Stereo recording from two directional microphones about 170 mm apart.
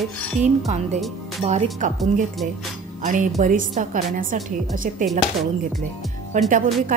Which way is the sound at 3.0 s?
50° right (ahead or behind).